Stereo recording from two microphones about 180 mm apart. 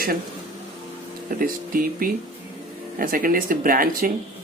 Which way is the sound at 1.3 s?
50° right (ahead or behind).